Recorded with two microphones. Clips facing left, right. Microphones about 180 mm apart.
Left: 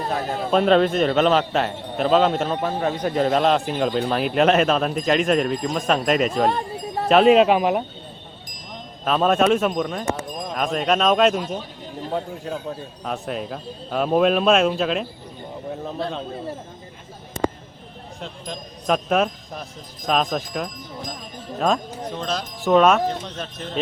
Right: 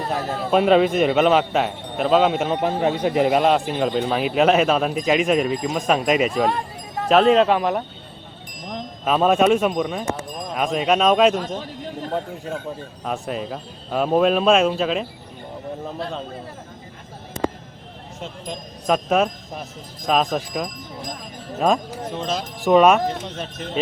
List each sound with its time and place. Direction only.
0.5 s speech: 5° right (ahead or behind)
2.5 s speech: 20° right (ahead or behind); by 6.5 s 5° right (ahead or behind)
7.1 s speech: 10° left (ahead or behind)
9.0 s speech: 5° right (ahead or behind)
18.2 s speech: centre (ahead or behind)